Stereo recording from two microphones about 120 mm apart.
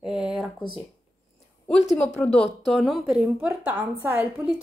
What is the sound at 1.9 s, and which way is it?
A woman's voice, 10° left (ahead or behind).